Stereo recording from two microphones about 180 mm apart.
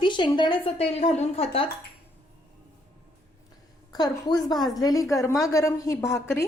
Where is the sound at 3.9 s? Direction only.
20° left (ahead or behind).